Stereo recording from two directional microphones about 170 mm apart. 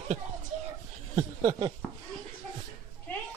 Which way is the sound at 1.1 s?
20° right (ahead or behind).